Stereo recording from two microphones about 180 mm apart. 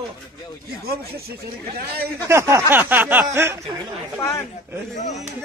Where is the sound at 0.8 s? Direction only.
60° right (ahead or behind).